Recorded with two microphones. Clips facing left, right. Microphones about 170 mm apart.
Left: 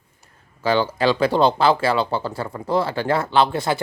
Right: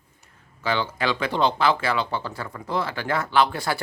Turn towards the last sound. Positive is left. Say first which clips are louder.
# left 3 dB
turn(degrees=25)  # may be behind; listen again after turning